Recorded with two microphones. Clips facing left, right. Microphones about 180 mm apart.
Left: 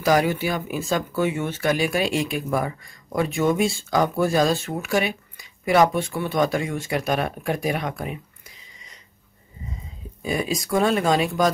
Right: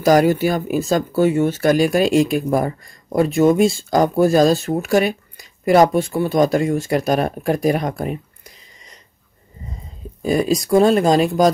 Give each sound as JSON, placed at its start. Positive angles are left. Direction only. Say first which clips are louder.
{"t": 0.0, "sound": "speech", "louder": "right 6 dB", "side_deg": -40}
{"t": 10.2, "sound": "speech", "louder": "right 8 dB", "side_deg": -40}